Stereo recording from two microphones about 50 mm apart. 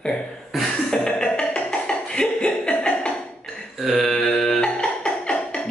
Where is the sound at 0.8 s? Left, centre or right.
Centre.